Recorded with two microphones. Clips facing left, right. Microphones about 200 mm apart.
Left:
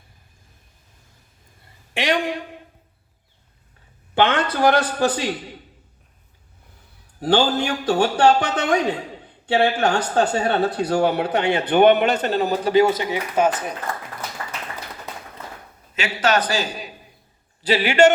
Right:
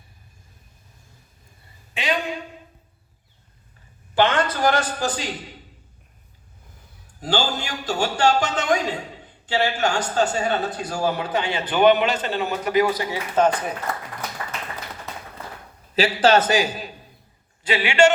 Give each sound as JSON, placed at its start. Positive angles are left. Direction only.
{"t": 4.1, "sound": "speech", "side_deg": 60}
{"t": 7.2, "sound": "speech", "side_deg": 60}
{"t": 12.3, "sound": "speech", "side_deg": 35}
{"t": 13.3, "sound": "speech", "side_deg": 5}
{"t": 16.0, "sound": "a man's voice", "side_deg": -30}
{"t": 17.6, "sound": "a man's voice", "side_deg": 35}